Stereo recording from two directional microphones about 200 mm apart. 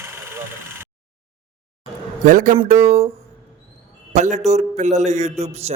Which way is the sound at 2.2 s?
40° right (ahead or behind).